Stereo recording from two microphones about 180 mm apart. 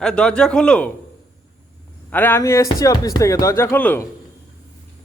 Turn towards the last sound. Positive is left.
turn(degrees=10)  # may be behind; listen again after turning